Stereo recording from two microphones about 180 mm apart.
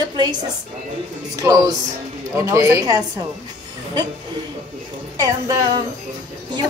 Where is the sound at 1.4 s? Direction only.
20° right (ahead or behind).